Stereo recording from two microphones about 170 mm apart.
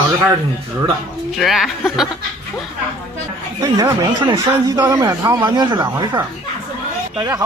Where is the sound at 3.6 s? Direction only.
25° right (ahead or behind).